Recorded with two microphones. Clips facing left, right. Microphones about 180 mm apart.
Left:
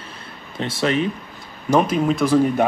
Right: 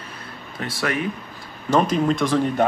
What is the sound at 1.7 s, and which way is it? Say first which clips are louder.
Speech: left 1 dB; 5° left (ahead or behind).